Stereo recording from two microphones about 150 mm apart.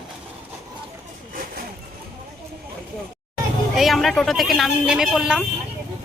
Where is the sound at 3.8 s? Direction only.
Centre (ahead or behind).